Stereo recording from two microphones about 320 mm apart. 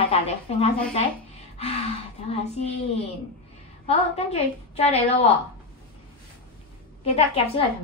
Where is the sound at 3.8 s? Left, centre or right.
Centre.